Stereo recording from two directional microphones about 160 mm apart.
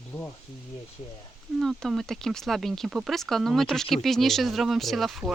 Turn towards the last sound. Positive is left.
turn(degrees=0)  # may be behind; listen again after turning